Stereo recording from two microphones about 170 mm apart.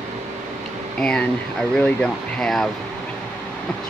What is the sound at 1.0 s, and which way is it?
Speech, 5° left (ahead or behind).